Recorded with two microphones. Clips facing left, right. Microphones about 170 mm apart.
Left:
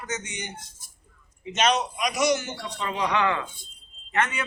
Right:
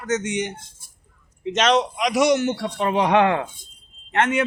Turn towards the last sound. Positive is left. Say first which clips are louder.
# right 7 dB
turn(degrees=-60)  # may be behind; listen again after turning